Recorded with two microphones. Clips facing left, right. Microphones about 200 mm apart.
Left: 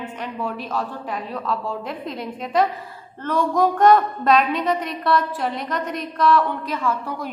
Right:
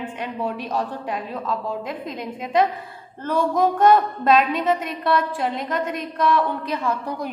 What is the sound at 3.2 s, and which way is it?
A woman's voice, 10° right (ahead or behind).